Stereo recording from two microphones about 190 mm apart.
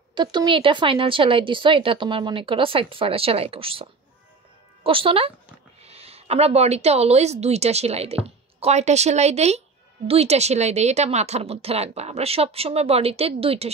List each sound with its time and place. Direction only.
0.1 s a woman's voice: 25° right (ahead or behind)